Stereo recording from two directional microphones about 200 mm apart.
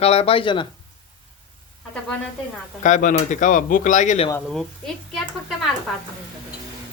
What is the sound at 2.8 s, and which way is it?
Speech, 40° left (ahead or behind).